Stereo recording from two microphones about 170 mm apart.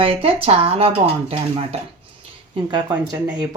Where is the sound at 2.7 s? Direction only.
25° right (ahead or behind).